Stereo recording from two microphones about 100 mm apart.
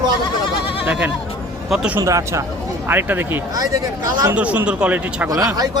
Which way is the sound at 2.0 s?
30° right (ahead or behind).